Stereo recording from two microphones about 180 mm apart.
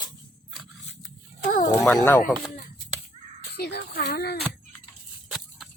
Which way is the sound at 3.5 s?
65° left (ahead or behind).